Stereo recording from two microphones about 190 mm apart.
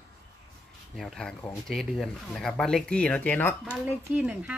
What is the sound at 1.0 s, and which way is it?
Speech, centre (ahead or behind).